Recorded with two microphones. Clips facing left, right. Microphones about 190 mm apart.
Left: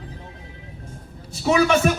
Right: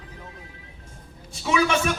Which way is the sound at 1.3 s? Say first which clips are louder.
Left 5 dB; 40° left (ahead or behind).